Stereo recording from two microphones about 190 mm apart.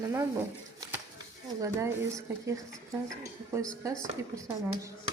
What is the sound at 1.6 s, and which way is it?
Speech, 15° right (ahead or behind).